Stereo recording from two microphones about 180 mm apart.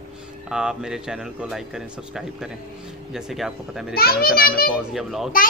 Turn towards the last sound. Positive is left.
turn(degrees=0)  # may be behind; listen again after turning